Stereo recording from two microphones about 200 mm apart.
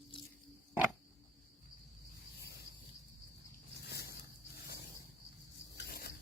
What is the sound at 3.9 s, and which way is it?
Zipper, 50° left (ahead or behind).